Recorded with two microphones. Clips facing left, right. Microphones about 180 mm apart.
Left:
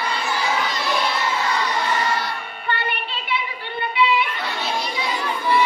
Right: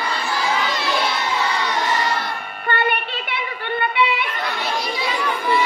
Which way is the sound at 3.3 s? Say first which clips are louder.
Right 2 dB; 60° right (ahead or behind).